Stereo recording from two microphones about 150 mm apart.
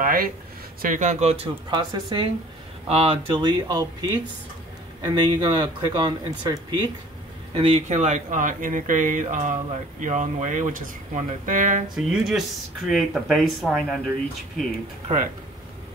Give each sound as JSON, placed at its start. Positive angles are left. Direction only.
{"t": 0.0, "sound": "a sound", "side_deg": -75}
{"t": 0.8, "sound": "speech", "side_deg": -55}
{"t": 2.9, "sound": "speech", "side_deg": -40}
{"t": 3.3, "sound": "speech", "side_deg": -30}
{"t": 7.5, "sound": "speech", "side_deg": -40}
{"t": 11.9, "sound": "speech", "side_deg": -5}